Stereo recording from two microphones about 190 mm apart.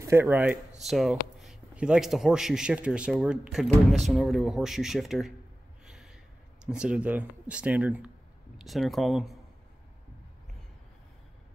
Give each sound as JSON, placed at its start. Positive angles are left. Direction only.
{"t": 0.0, "sound": "speech", "side_deg": -10}
{"t": 5.9, "sound": "gasp", "side_deg": -5}
{"t": 6.6, "sound": "speech", "side_deg": -5}